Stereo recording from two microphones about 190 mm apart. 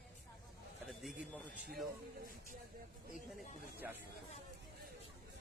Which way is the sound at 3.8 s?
10° right (ahead or behind).